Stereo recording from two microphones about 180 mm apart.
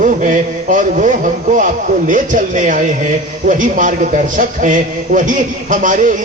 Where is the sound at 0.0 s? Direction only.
45° right (ahead or behind).